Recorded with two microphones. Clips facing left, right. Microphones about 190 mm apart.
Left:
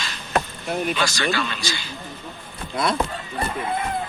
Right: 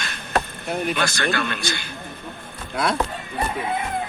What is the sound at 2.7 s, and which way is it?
Speech, 10° right (ahead or behind).